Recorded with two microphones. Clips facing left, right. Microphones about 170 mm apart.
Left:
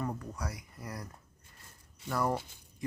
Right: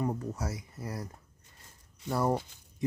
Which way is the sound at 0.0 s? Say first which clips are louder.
Right 4 dB; 25° right (ahead or behind).